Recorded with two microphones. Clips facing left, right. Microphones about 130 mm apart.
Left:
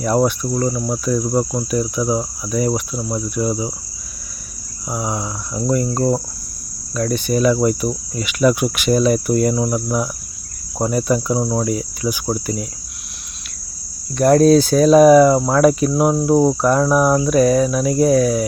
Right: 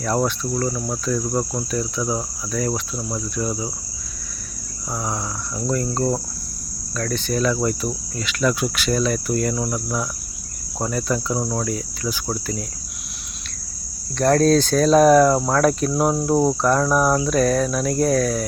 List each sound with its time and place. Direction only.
0.0 s cricket: 15° left (ahead or behind)
4.9 s cricket: 15° left (ahead or behind)
14.2 s cricket: 10° left (ahead or behind)